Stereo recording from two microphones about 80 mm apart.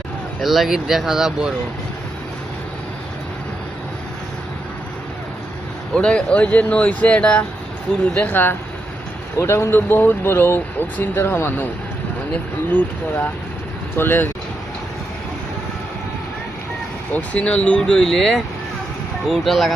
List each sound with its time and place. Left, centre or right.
0.4 s speech: centre
5.9 s speech: centre; by 14.3 s left
17.1 s speech: centre